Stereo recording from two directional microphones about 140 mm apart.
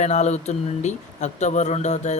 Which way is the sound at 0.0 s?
55° left (ahead or behind).